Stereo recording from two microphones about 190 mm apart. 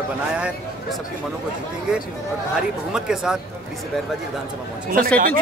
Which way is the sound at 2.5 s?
5° right (ahead or behind).